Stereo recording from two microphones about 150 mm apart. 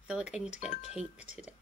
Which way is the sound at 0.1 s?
5° right (ahead or behind).